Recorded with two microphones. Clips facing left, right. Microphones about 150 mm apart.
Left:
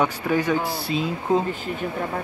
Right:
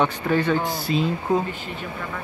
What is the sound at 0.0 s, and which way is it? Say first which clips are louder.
Speech: right 1 dB; 10° left (ahead or behind).